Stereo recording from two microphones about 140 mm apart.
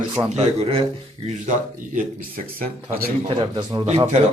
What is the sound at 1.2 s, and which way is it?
Speech, 65° right (ahead or behind).